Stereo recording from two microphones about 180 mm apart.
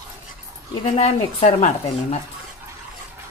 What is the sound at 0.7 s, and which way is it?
Speech, 35° left (ahead or behind).